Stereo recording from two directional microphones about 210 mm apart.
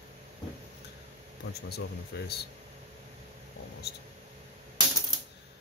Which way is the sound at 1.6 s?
50° left (ahead or behind).